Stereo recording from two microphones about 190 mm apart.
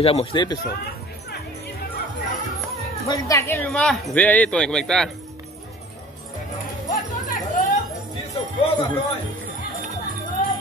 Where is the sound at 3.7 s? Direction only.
Centre (ahead or behind).